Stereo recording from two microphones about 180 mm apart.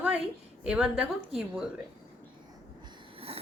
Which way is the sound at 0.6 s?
5° right (ahead or behind).